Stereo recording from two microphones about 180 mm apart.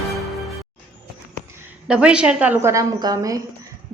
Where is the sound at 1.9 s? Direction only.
5° right (ahead or behind).